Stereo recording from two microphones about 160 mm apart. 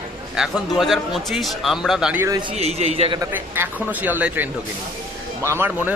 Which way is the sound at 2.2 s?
25° right (ahead or behind).